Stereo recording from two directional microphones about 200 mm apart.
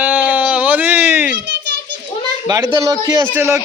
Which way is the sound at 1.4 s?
60° right (ahead or behind).